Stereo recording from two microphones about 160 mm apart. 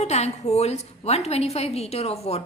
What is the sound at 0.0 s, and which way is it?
A woman's voice, 45° left (ahead or behind).